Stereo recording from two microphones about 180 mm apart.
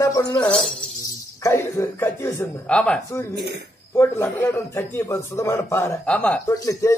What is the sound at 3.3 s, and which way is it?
Speech, 65° right (ahead or behind).